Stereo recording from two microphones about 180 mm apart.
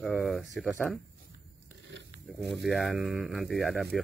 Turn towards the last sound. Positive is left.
turn(degrees=0)  # may be behind; listen again after turning